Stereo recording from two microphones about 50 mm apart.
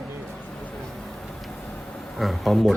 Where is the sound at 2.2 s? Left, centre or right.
Centre.